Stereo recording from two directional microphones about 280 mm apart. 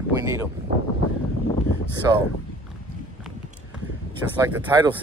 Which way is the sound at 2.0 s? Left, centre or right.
Centre.